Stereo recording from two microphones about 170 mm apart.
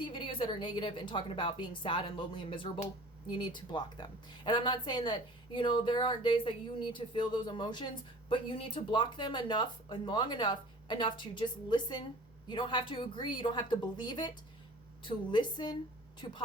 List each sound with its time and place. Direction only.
0.0 s speech: 30° left (ahead or behind)